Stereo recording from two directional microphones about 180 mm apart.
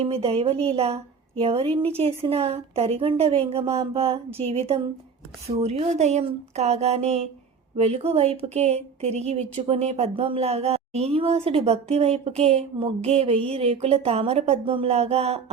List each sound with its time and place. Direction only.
0.0 s speech: 35° right (ahead or behind)